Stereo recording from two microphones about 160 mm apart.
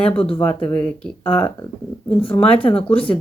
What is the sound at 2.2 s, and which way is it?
Speech, 35° left (ahead or behind).